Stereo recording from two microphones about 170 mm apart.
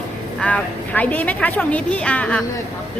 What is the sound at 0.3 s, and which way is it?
A woman's voice, 5° left (ahead or behind).